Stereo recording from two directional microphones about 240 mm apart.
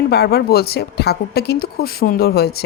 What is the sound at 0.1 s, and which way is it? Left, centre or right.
Speech, left.